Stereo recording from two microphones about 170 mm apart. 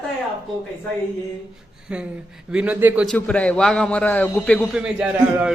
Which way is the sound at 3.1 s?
5° left (ahead or behind).